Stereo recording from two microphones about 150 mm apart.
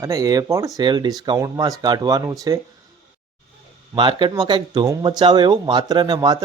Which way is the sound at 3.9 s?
30° right (ahead or behind).